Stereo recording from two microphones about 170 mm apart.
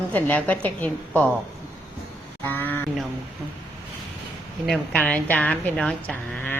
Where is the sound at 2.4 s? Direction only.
10° left (ahead or behind).